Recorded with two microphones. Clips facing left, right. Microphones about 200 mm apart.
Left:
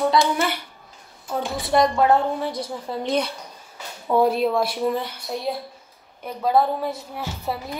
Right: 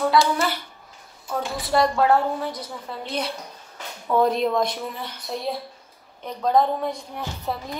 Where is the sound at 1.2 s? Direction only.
25° left (ahead or behind).